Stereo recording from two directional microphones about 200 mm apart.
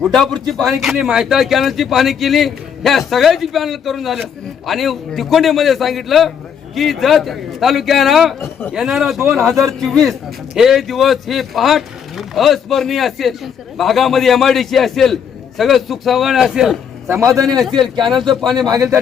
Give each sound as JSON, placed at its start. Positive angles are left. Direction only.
{"t": 0.0, "sound": "speech", "side_deg": 0}
{"t": 17.1, "sound": "a man's voice", "side_deg": -15}
{"t": 18.2, "sound": "speech", "side_deg": 0}
{"t": 18.7, "sound": "a man's voice", "side_deg": -15}